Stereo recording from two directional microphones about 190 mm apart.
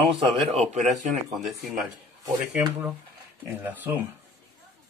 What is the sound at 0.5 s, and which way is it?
Speech, 35° right (ahead or behind).